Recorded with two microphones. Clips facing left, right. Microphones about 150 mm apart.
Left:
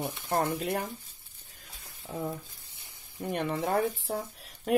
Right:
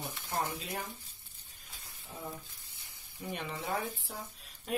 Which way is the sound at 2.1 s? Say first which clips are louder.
Left 10 dB; 90° left.